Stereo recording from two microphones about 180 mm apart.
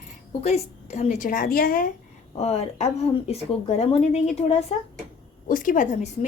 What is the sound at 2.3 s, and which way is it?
A woman's voice, 35° left (ahead or behind).